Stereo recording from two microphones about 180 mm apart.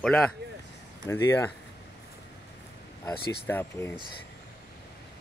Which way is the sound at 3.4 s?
10° left (ahead or behind).